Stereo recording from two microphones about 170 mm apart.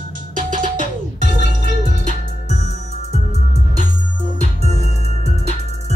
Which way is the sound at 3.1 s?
40° right (ahead or behind).